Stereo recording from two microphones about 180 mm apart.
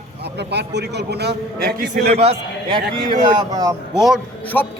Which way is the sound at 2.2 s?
35° right (ahead or behind).